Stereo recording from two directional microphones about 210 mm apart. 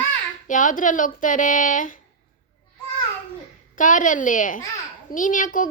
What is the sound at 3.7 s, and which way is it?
A child's voice, 40° left (ahead or behind).